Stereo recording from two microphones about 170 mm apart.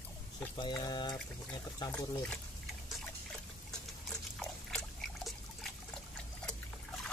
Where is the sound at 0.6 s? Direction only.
25° left (ahead or behind).